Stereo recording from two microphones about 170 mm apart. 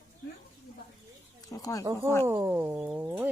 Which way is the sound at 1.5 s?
20° left (ahead or behind).